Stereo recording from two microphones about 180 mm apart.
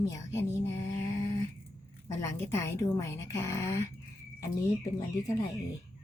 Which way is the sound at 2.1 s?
15° left (ahead or behind).